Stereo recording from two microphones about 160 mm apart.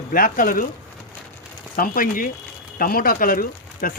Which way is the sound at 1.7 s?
60° left (ahead or behind).